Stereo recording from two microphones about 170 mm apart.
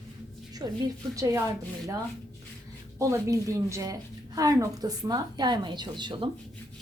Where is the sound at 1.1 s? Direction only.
15° right (ahead or behind).